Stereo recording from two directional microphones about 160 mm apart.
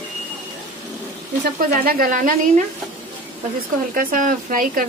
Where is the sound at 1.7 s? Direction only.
65° right (ahead or behind).